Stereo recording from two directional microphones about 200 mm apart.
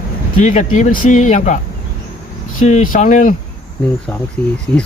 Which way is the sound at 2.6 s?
40° left (ahead or behind).